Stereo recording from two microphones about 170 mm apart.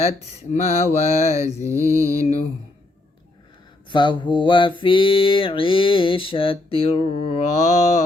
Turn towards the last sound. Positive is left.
turn(degrees=40)  # may be behind; listen again after turning